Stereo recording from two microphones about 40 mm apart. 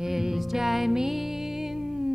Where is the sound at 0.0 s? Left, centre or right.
Centre.